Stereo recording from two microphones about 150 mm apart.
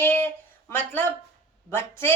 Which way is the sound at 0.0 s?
15° left (ahead or behind).